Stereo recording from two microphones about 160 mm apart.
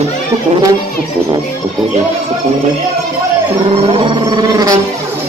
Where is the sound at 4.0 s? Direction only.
30° right (ahead or behind).